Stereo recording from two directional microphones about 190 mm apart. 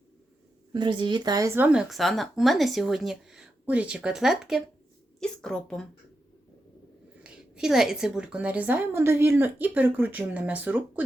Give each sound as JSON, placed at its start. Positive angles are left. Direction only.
{"t": 0.7, "sound": "speech", "side_deg": -25}
{"t": 7.2, "sound": "a woman's voice", "side_deg": -5}